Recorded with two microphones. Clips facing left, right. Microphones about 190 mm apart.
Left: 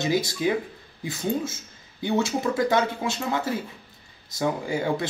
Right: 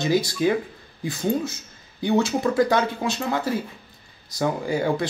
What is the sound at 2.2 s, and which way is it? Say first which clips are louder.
Speech: right 2 dB; 20° left (ahead or behind).